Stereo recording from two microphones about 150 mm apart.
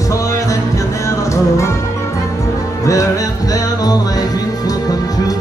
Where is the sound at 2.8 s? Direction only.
20° left (ahead or behind).